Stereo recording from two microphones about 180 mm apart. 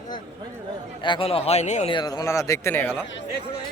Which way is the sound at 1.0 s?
30° left (ahead or behind).